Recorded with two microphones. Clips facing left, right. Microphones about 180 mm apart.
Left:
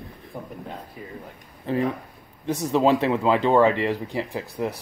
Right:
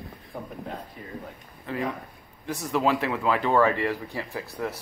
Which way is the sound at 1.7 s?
30° left (ahead or behind).